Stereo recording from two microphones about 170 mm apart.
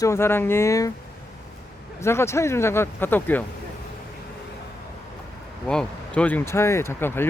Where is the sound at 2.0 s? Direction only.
15° left (ahead or behind).